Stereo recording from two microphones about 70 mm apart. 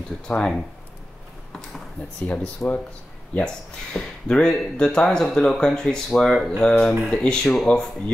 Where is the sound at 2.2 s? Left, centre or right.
Left.